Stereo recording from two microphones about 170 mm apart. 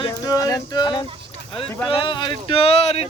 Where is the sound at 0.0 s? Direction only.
20° left (ahead or behind).